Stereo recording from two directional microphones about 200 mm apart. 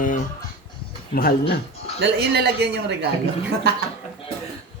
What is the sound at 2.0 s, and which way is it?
Speech, 60° right (ahead or behind).